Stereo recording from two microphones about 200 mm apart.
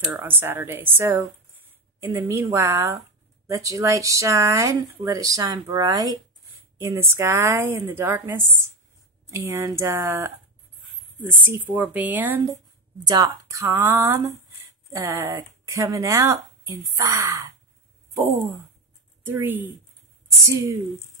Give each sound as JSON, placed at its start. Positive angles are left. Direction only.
{"t": 0.2, "sound": "speech", "side_deg": -10}
{"t": 19.2, "sound": "speech", "side_deg": -10}